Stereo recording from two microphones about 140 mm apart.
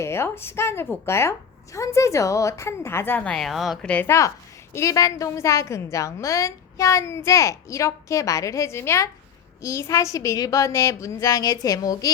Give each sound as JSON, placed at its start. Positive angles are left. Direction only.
{"t": 0.0, "sound": "a woman's voice", "side_deg": 20}